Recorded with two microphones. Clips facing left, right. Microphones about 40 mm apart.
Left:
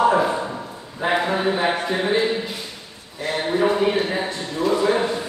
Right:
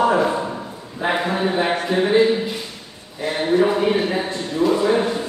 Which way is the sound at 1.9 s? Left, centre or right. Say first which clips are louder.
Right 4 dB; centre.